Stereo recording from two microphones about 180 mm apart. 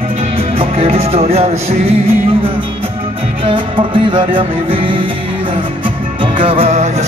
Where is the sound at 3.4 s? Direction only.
30° right (ahead or behind).